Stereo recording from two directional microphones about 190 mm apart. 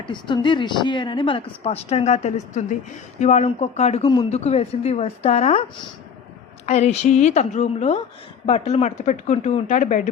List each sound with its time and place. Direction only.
0.1 s speech: 25° left (ahead or behind)
6.7 s speech: 35° left (ahead or behind)